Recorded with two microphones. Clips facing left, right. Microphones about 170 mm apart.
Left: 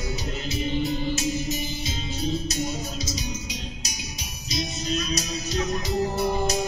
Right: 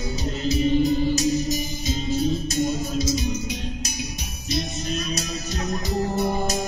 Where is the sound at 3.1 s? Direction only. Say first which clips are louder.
Right 7 dB; 55° right (ahead or behind).